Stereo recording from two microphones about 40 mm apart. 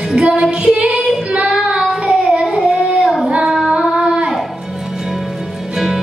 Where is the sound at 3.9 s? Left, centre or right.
Centre.